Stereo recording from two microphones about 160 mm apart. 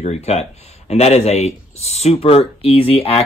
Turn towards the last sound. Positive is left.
turn(degrees=35)  # may be behind; listen again after turning